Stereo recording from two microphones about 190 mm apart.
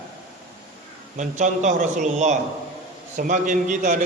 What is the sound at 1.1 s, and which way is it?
A man's voice, 40° right (ahead or behind).